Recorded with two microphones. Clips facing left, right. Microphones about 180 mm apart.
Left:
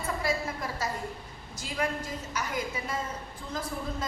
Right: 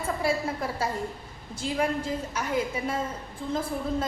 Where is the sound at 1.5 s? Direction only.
30° right (ahead or behind).